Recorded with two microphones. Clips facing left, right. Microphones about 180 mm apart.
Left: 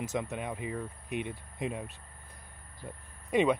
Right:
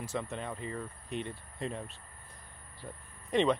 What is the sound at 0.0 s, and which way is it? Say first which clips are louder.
Speech: left 3 dB; 15° left (ahead or behind).